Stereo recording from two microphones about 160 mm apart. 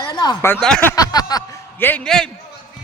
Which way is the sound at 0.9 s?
25° left (ahead or behind).